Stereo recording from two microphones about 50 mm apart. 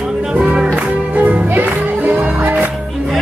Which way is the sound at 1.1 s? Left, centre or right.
Right.